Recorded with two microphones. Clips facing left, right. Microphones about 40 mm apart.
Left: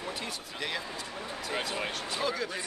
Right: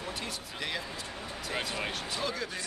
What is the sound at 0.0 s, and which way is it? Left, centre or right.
Speech, centre.